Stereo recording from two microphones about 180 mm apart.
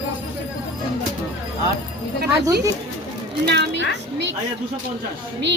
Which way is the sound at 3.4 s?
70° right (ahead or behind).